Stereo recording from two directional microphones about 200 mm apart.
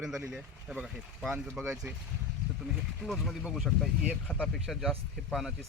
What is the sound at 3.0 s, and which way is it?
Speech, centre (ahead or behind).